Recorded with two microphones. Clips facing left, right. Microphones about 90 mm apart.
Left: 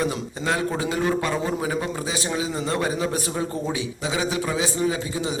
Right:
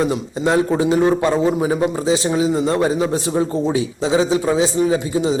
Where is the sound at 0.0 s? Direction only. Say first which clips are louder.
Right 7 dB; 25° right (ahead or behind).